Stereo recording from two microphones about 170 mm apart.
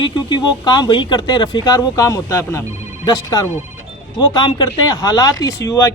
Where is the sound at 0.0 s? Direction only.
25° left (ahead or behind).